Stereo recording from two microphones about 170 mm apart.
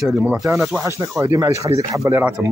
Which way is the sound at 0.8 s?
15° right (ahead or behind).